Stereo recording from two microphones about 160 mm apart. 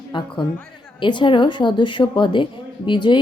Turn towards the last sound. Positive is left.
turn(degrees=30)  # may be behind; listen again after turning